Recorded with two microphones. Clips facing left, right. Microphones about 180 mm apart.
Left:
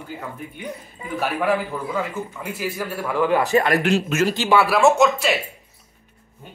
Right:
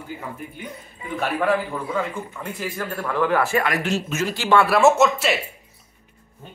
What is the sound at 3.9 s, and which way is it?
Speech, 60° left (ahead or behind).